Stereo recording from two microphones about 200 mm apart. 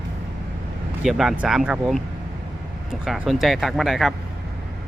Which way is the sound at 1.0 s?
Centre (ahead or behind).